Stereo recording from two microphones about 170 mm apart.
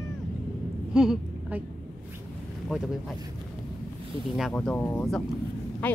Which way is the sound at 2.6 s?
Centre (ahead or behind).